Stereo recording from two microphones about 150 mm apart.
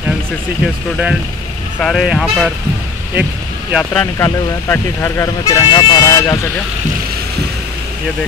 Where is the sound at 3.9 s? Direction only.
15° left (ahead or behind).